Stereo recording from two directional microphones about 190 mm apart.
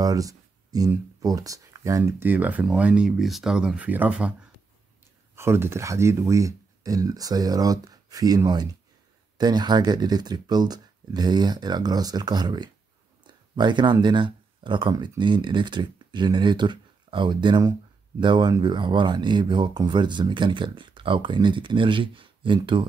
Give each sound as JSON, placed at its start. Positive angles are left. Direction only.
{"t": 0.0, "sound": "speech", "side_deg": -20}